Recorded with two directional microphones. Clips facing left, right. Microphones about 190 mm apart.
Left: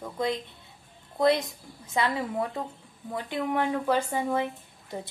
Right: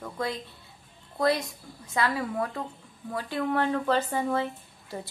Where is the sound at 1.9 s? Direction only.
25° left (ahead or behind).